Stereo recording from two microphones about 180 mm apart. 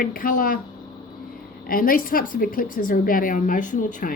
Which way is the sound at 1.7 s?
50° left (ahead or behind).